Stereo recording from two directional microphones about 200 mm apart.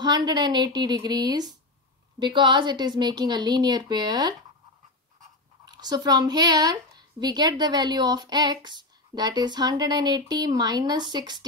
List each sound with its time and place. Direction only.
0.0 s a woman's voice: 20° right (ahead or behind)
5.7 s a woman's voice: 20° right (ahead or behind)